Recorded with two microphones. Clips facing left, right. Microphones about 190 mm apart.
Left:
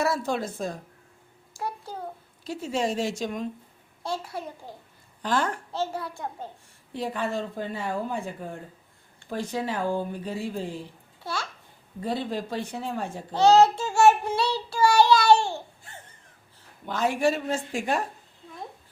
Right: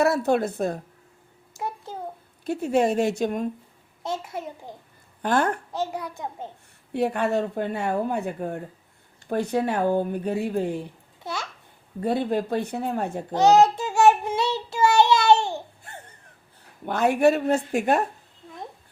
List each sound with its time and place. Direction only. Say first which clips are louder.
0.0 s a woman's voice: right 6 dB; 60° right (ahead or behind)
1.5 s a sound: right 1 dB; 20° right (ahead or behind)
2.4 s a woman's voice: right 6 dB; 55° right (ahead or behind)
4.0 s child singing: right 2 dB; 20° right (ahead or behind)
5.2 s a woman's voice: right 4 dB; 55° right (ahead or behind)
5.7 s a child's voice: right 1 dB; 15° right (ahead or behind)
6.9 s a woman's voice: right 6 dB; 65° right (ahead or behind)
11.2 s a child's voice: right 1 dB; 20° right (ahead or behind)
11.9 s a woman's voice: right 5 dB; 55° right (ahead or behind)
13.3 s child singing: right 1 dB; 15° right (ahead or behind)
16.8 s a woman's voice: right 5 dB; 60° right (ahead or behind)